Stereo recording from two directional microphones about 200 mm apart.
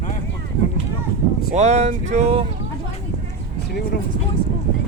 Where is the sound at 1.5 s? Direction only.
35° right (ahead or behind).